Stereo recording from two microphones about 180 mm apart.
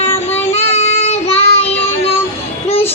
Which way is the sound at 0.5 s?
35° left (ahead or behind).